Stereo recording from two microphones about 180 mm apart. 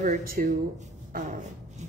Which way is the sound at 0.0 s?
45° right (ahead or behind).